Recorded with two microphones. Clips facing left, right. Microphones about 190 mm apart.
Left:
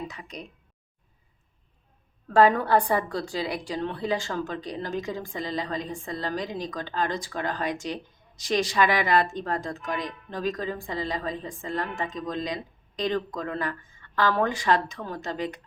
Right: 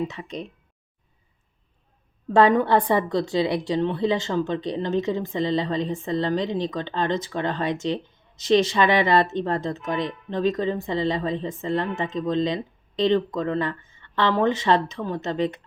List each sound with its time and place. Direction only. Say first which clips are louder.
0.1 s a woman's voice: right 7 dB; 25° right (ahead or behind)
2.3 s a woman's voice: right 2 dB; 20° right (ahead or behind)